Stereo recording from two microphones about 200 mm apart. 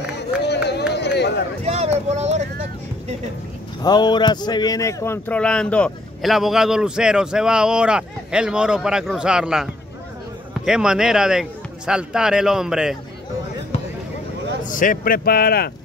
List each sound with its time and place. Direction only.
0.2 s run: 55° left (ahead or behind)
0.9 s a sound: 60° left (ahead or behind)
1.6 s speech: 30° right (ahead or behind)
3.8 s speech: 20° left (ahead or behind); by 12.9 s 5° right (ahead or behind)
14.7 s speech: 40° left (ahead or behind)